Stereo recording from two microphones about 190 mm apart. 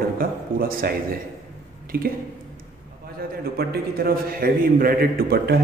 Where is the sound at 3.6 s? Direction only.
55° right (ahead or behind).